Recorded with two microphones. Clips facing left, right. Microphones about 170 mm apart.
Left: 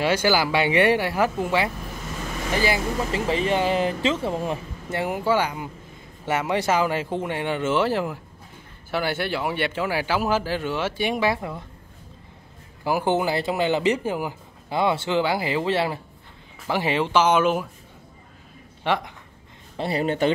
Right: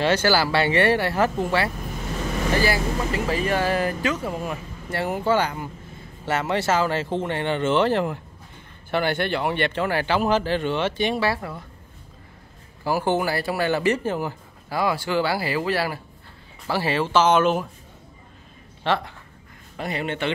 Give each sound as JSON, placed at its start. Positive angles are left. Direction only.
{"t": 0.0, "sound": "a man's voice", "side_deg": 10}
{"t": 4.9, "sound": "a man's voice", "side_deg": 10}
{"t": 12.8, "sound": "a man's voice", "side_deg": 15}
{"t": 14.8, "sound": "a man's voice", "side_deg": 25}
{"t": 18.9, "sound": "a man's voice", "side_deg": 15}
{"t": 19.8, "sound": "speech", "side_deg": 35}